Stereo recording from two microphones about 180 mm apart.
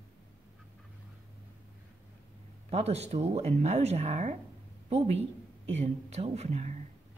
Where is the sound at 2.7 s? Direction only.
35° right (ahead or behind).